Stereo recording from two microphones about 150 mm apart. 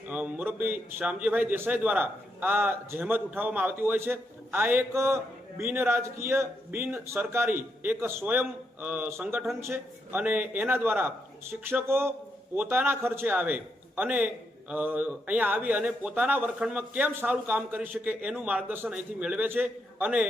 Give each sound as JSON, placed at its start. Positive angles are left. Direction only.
{"t": 0.1, "sound": "a man's voice", "side_deg": -10}